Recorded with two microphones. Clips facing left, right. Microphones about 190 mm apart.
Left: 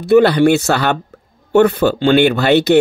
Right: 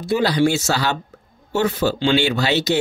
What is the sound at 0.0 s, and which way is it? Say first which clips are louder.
Speech: left 8 dB; 60° left (ahead or behind).